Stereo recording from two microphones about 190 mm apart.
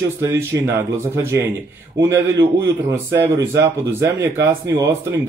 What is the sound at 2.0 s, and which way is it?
A man's voice, 15° right (ahead or behind).